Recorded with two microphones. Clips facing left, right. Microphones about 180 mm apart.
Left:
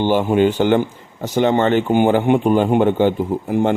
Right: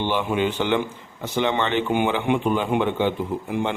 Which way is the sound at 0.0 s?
40° left (ahead or behind).